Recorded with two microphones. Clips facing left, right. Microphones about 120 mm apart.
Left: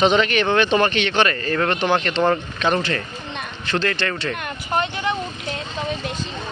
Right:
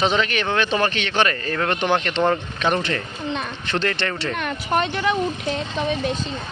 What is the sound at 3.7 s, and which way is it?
Speech, 20° right (ahead or behind).